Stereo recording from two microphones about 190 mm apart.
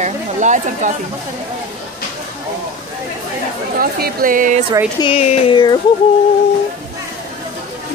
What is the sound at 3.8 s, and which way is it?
Speech, 50° right (ahead or behind).